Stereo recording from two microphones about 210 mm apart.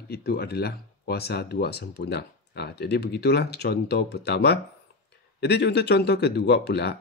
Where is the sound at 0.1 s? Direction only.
50° left (ahead or behind).